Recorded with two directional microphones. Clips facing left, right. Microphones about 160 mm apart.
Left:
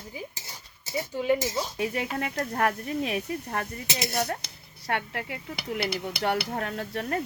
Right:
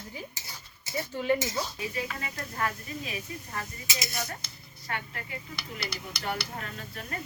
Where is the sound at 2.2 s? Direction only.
65° left (ahead or behind).